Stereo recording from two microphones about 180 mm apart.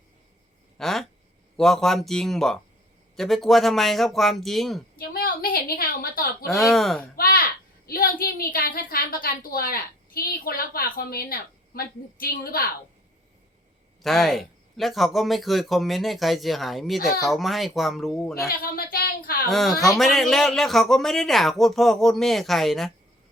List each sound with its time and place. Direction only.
0.8 s speech: centre (ahead or behind)
4.9 s a woman's voice: 55° left (ahead or behind)
6.5 s speech: centre (ahead or behind)
7.2 s a sound: 55° left (ahead or behind)
7.9 s a woman's voice: 55° left (ahead or behind)
14.0 s speech: centre (ahead or behind)
18.4 s a woman's voice: 55° left (ahead or behind)
19.5 s speech: centre (ahead or behind)